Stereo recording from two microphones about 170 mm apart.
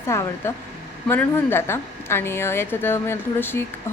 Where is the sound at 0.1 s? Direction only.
15° left (ahead or behind).